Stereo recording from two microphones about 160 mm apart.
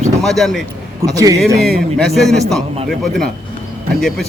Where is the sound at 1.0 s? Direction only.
20° right (ahead or behind).